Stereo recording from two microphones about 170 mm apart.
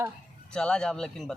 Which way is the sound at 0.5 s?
5° left (ahead or behind).